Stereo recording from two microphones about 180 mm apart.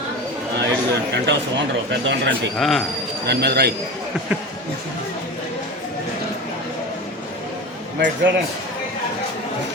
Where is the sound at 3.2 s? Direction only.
65° right (ahead or behind).